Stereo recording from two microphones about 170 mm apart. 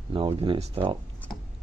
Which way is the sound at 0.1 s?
30° right (ahead or behind).